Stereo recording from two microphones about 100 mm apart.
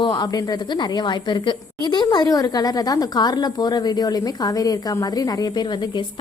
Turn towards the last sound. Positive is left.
turn(degrees=45)  # may be behind; listen again after turning